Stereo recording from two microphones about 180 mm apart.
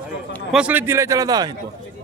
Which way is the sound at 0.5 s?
10° right (ahead or behind).